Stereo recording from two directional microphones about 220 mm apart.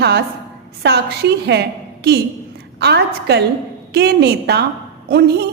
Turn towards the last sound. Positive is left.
turn(degrees=-45)  # may be behind; listen again after turning